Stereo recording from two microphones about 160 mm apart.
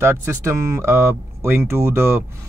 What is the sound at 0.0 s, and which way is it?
Speech, 15° right (ahead or behind).